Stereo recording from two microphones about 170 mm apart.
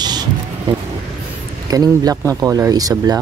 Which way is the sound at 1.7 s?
20° right (ahead or behind).